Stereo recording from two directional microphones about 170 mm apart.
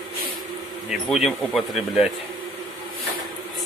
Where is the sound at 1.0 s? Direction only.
Centre (ahead or behind).